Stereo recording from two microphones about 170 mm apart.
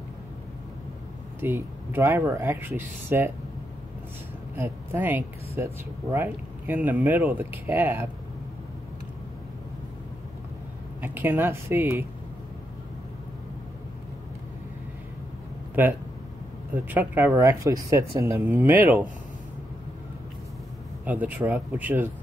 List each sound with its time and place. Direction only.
1.4 s speech: 15° right (ahead or behind)
4.6 s speech: 10° right (ahead or behind)
11.0 s speech: 10° right (ahead or behind)
16.9 s speech: 10° right (ahead or behind)
21.0 s speech: 10° right (ahead or behind)